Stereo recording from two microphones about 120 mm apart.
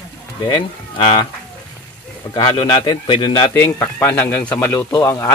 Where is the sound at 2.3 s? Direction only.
40° left (ahead or behind).